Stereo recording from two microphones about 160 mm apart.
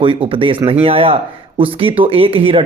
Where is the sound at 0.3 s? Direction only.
35° right (ahead or behind).